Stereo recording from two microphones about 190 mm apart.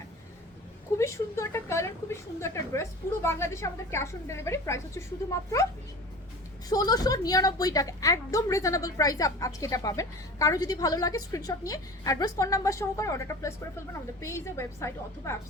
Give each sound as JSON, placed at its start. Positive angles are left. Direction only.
{"t": 0.9, "sound": "a woman's voice", "side_deg": 15}
{"t": 6.7, "sound": "a woman's voice", "side_deg": 20}